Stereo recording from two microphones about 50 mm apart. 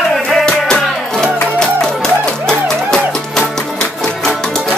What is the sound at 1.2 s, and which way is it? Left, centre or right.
Music, centre.